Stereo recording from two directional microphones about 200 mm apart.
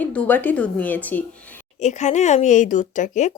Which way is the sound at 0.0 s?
5° left (ahead or behind).